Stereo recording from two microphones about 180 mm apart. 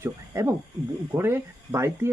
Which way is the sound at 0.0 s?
15° right (ahead or behind).